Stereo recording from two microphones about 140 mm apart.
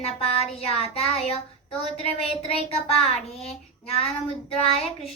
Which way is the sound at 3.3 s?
45° left (ahead or behind).